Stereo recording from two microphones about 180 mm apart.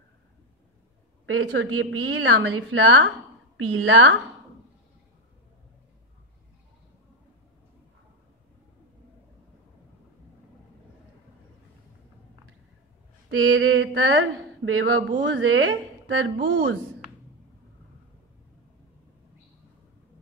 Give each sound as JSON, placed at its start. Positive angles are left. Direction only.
{"t": 1.2, "sound": "speech", "side_deg": -90}
{"t": 13.6, "sound": "speech", "side_deg": -90}